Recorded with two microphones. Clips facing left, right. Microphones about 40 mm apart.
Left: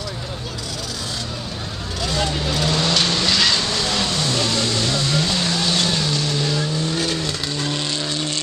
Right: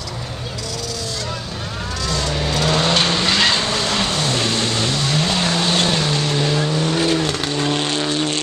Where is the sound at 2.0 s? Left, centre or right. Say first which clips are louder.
Left 1 dB; centre.